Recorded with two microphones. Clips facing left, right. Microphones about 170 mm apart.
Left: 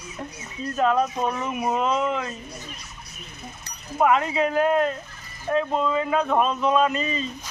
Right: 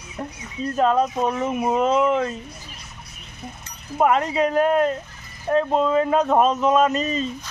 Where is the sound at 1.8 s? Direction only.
45° right (ahead or behind).